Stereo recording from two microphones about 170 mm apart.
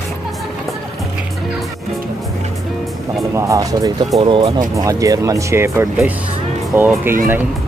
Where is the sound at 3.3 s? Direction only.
20° right (ahead or behind).